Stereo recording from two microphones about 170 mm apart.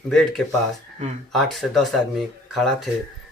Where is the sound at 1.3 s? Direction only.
Centre (ahead or behind).